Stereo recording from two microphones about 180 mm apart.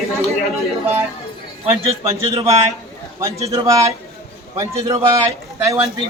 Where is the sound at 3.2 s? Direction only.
15° right (ahead or behind).